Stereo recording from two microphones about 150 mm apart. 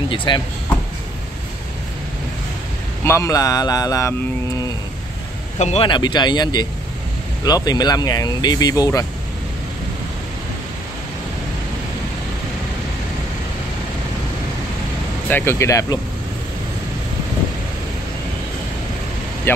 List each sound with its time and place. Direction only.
0.1 s speech: 35° left (ahead or behind)
3.0 s speech: 20° left (ahead or behind)
5.8 s speech: 30° left (ahead or behind)
15.2 s speech: 15° left (ahead or behind)
19.5 s speech: 15° left (ahead or behind)